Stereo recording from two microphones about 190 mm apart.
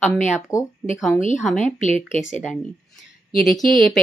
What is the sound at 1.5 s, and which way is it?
Speech, 40° left (ahead or behind).